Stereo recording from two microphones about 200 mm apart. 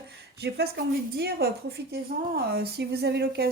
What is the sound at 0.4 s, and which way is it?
Speech, 55° right (ahead or behind).